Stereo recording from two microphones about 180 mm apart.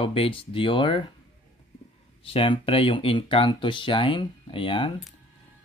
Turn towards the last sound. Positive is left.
turn(degrees=30)  # may be behind; listen again after turning